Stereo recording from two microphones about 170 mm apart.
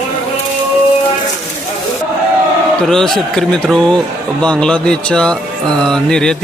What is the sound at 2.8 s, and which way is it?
A man's voice, 5° left (ahead or behind).